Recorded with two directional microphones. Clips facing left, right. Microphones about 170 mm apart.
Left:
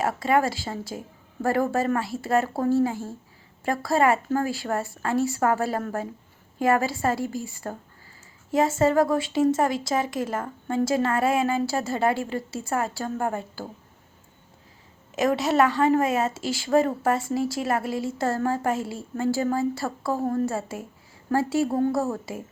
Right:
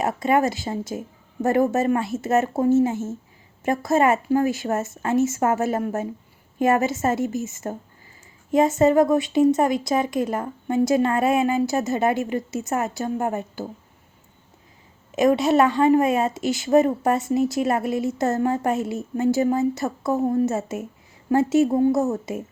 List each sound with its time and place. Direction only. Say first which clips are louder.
0.0 s speech: right 2 dB; 20° right (ahead or behind)
15.1 s speech: right 4 dB; 20° right (ahead or behind)